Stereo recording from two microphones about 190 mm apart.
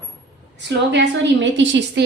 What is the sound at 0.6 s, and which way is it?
A woman's voice, 70° right (ahead or behind).